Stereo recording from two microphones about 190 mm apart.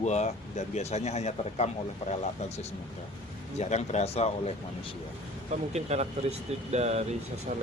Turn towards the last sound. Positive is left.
turn(degrees=-35)  # may be behind; listen again after turning